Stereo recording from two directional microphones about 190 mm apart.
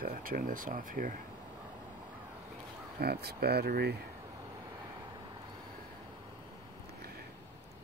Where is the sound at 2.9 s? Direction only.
55° right (ahead or behind).